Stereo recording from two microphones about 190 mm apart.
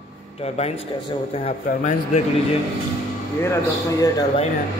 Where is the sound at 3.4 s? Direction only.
15° left (ahead or behind).